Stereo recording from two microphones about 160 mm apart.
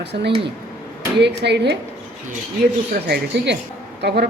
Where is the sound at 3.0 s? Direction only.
80° right.